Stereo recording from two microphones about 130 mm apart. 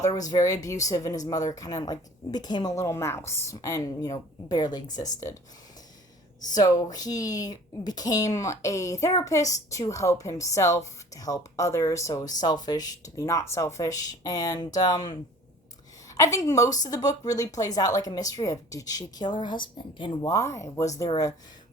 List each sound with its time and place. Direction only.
0.0 s speech: 30° left (ahead or behind)
2.7 s speech: 20° left (ahead or behind)
6.5 s speech: 25° left (ahead or behind)
16.1 s speech: 25° left (ahead or behind)
20.3 s speech: 25° left (ahead or behind)